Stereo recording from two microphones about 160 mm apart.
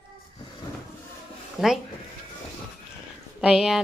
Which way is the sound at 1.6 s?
5° right (ahead or behind).